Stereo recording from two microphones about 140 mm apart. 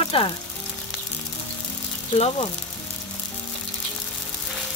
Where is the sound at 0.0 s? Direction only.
40° left (ahead or behind).